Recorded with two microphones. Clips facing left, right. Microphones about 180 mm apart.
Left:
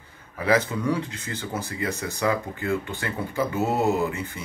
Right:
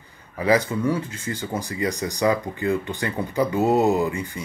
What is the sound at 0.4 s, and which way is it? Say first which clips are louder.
Speech: right 3 dB; 10° right (ahead or behind).